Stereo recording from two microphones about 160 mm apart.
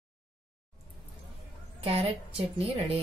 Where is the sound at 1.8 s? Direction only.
35° right (ahead or behind).